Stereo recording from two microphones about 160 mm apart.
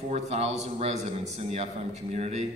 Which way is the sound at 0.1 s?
40° right (ahead or behind).